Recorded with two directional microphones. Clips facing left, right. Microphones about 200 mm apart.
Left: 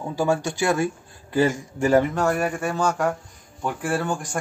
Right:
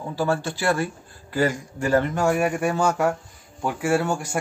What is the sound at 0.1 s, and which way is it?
Speech, 15° left (ahead or behind).